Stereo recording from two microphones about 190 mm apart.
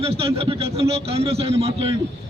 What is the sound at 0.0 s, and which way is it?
A man's voice, 30° right (ahead or behind).